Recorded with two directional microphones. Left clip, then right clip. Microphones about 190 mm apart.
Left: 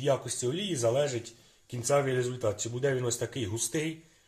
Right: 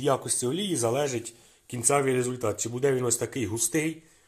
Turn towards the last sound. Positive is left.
turn(degrees=-30)  # may be behind; listen again after turning